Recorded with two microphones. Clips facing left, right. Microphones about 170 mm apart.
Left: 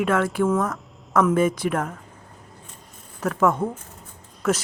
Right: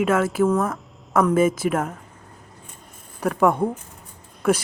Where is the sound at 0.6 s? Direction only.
10° right (ahead or behind).